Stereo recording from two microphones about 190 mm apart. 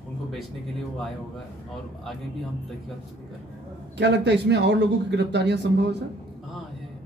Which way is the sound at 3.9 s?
65° right (ahead or behind).